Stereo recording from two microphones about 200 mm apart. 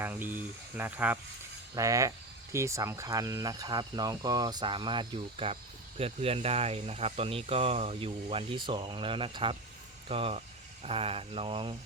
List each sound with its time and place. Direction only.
0.0 s speech: 10° right (ahead or behind); by 11.8 s 25° right (ahead or behind)